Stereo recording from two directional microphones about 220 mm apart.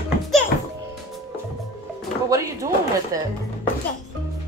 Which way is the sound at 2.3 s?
15° right (ahead or behind).